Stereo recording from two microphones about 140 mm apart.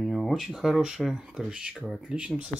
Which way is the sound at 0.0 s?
Centre (ahead or behind).